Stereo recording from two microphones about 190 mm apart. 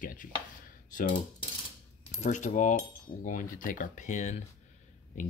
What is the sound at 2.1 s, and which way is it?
Cutlery, 40° left (ahead or behind).